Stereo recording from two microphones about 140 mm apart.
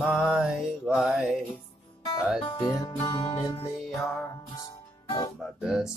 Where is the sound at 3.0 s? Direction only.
40° left (ahead or behind).